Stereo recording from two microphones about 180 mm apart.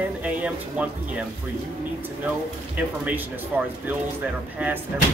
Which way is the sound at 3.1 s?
10° right (ahead or behind).